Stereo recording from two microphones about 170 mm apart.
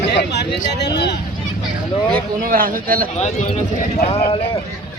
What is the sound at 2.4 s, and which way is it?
Speech, 55° right (ahead or behind).